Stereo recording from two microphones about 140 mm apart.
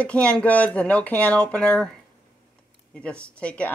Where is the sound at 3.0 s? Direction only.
10° left (ahead or behind).